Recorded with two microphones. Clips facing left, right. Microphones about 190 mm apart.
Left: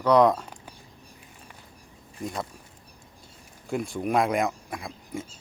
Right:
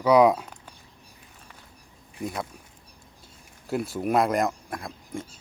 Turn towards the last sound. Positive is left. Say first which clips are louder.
# even
turn(degrees=0)  # may be behind; listen again after turning